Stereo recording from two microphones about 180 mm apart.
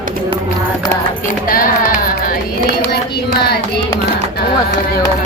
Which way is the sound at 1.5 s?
50° left (ahead or behind).